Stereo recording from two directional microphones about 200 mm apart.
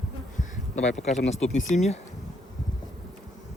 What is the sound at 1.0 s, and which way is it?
Speech, 35° left (ahead or behind).